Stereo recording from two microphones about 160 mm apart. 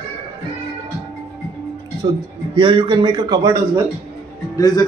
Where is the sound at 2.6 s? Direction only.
30° right (ahead or behind).